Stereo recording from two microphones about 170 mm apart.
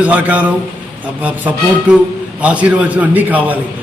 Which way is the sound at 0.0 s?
10° right (ahead or behind).